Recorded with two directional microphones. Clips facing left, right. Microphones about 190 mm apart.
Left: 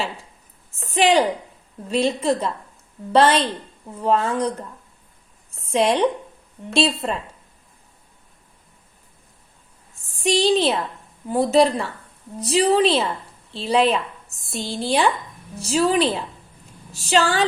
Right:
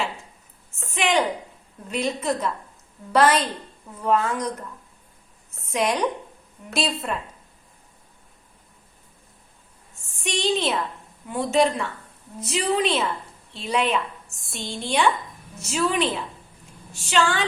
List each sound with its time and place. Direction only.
0.8 s a woman's voice: 35° left (ahead or behind)
10.2 s a woman's voice: 35° left (ahead or behind)